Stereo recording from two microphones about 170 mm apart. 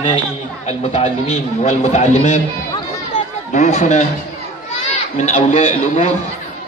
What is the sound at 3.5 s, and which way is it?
Speech, 40° left (ahead or behind).